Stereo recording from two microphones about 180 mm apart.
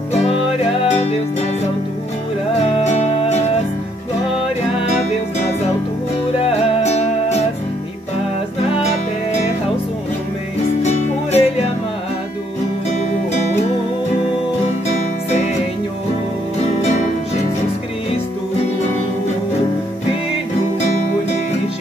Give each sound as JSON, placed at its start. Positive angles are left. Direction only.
{"t": 0.8, "sound": "music", "side_deg": 35}
{"t": 2.8, "sound": "music", "side_deg": 40}
{"t": 6.4, "sound": "music", "side_deg": 40}
{"t": 10.8, "sound": "music", "side_deg": 40}